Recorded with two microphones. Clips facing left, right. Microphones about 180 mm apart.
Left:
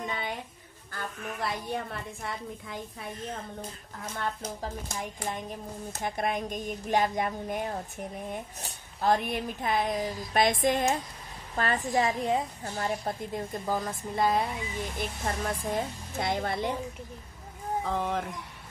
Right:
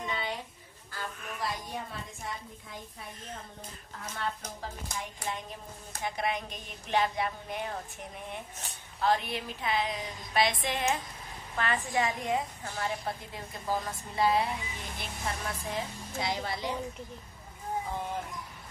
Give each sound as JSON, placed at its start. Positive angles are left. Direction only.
{"t": 0.0, "sound": "a sound", "side_deg": 50}
{"t": 4.0, "sound": "speech", "side_deg": 30}
{"t": 5.9, "sound": "a woman's voice", "side_deg": 50}
{"t": 12.1, "sound": "a woman's voice", "side_deg": 30}
{"t": 12.8, "sound": "a woman's voice", "side_deg": 45}
{"t": 17.8, "sound": "speech", "side_deg": 80}